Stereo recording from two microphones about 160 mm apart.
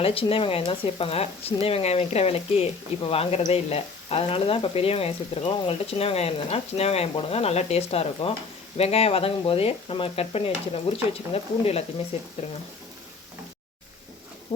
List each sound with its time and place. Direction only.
0.0 s speech: 35° left (ahead or behind)